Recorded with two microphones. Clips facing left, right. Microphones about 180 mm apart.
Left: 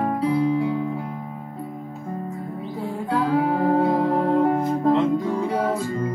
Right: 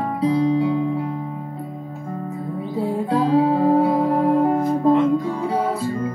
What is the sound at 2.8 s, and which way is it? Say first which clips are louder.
Music: right 4 dB; 30° right (ahead or behind).